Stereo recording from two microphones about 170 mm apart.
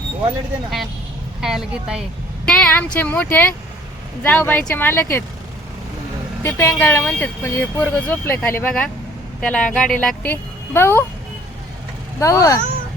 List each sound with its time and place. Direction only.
1.4 s speech: centre (ahead or behind)
2.5 s speech: 10° left (ahead or behind)
6.4 s speech: 15° left (ahead or behind)
12.2 s speech: 20° left (ahead or behind)